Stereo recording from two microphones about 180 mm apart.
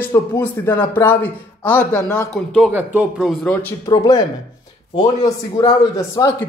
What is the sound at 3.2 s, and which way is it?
Speech, 5° left (ahead or behind).